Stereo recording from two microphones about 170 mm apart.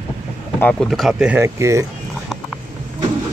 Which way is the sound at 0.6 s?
5° left (ahead or behind).